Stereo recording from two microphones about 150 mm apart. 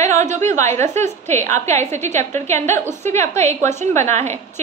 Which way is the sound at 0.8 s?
15° left (ahead or behind).